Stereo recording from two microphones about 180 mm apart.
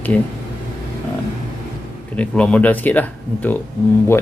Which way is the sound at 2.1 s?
5° left (ahead or behind).